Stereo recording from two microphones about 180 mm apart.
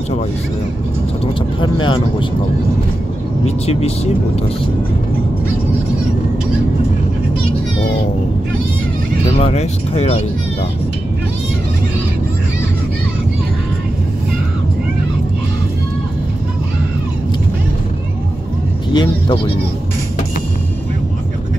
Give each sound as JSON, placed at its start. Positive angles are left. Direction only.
{"t": 1.2, "sound": "speech", "side_deg": 30}
{"t": 3.4, "sound": "speech", "side_deg": 35}
{"t": 9.3, "sound": "speech", "side_deg": 35}
{"t": 18.9, "sound": "speech", "side_deg": 25}